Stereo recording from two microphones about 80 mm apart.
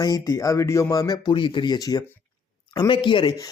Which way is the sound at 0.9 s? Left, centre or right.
Left.